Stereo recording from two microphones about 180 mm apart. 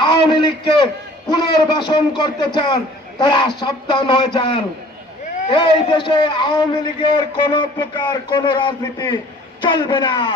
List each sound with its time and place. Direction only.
0.0 s a man's voice: 25° left (ahead or behind)